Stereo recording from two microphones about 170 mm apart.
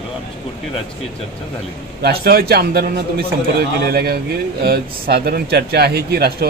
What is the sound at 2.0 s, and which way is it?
Speech, 65° right (ahead or behind).